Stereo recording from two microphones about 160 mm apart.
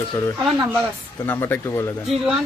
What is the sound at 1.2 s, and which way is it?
Speech, 15° left (ahead or behind).